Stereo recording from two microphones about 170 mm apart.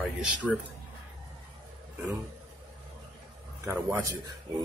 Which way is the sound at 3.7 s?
15° right (ahead or behind).